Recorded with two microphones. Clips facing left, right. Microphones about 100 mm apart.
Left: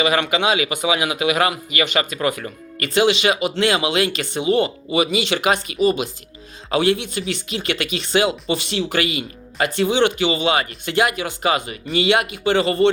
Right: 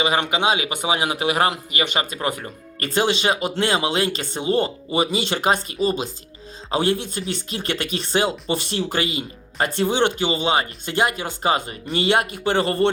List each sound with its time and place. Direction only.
0.0 s speech: 30° right (ahead or behind); by 12.7 s 45° right (ahead or behind)